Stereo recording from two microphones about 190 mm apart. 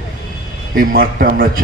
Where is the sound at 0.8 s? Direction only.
50° right (ahead or behind).